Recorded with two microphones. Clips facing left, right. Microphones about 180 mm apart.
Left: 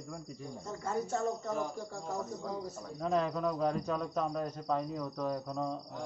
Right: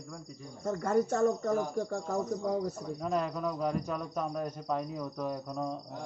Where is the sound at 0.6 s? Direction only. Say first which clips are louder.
Right 8 dB; 55° right (ahead or behind).